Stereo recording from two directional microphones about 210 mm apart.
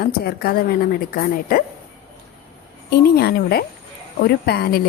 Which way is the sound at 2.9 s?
50° left (ahead or behind).